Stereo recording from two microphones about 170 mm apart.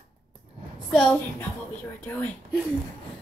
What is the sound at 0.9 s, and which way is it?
A child's voice, 5° left (ahead or behind).